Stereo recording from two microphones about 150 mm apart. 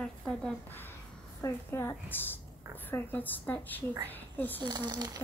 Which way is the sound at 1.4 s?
15° left (ahead or behind).